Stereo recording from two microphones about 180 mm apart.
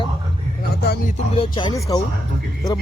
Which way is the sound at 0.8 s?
70° left (ahead or behind).